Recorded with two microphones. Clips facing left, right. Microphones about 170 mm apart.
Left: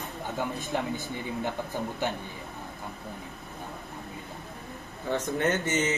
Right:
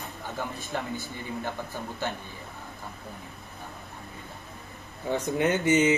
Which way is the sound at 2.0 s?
15° left (ahead or behind).